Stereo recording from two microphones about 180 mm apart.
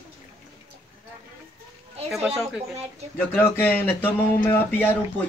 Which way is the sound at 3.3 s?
10° left (ahead or behind).